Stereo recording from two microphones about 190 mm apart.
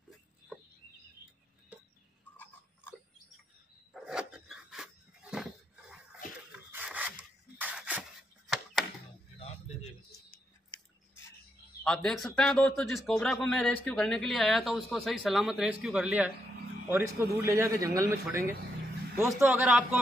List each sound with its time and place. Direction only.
2.3 s a sound: 10° left (ahead or behind)
3.9 s dog: 5° right (ahead or behind)
6.7 s rub: 10° right (ahead or behind)
11.8 s a man's voice: 5° left (ahead or behind); by 18.5 s 15° right (ahead or behind)
19.2 s a man's voice: 5° right (ahead or behind)